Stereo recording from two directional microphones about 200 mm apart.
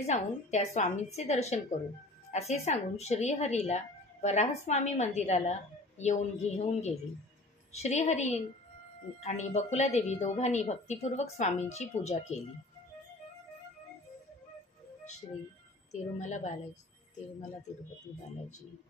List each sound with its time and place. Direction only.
0.0 s speech: 35° left (ahead or behind)
15.9 s speech: 35° left (ahead or behind)